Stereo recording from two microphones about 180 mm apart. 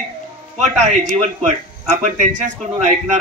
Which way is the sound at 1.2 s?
40° right (ahead or behind).